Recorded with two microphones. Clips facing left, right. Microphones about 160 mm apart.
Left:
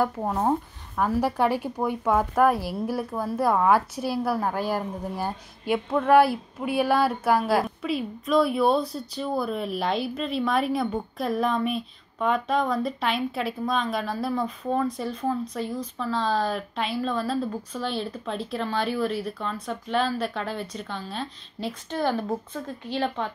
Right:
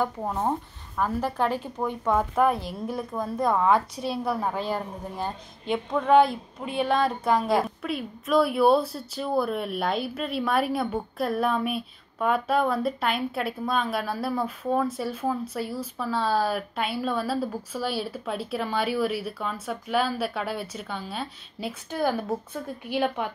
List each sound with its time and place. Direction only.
0.0 s a woman's voice: 5° left (ahead or behind); by 23.3 s 10° right (ahead or behind)